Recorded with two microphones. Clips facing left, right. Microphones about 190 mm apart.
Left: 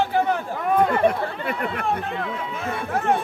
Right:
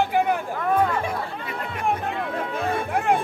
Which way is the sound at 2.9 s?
15° right (ahead or behind).